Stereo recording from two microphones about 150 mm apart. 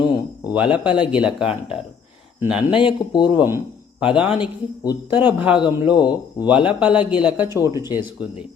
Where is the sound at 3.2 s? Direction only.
15° right (ahead or behind).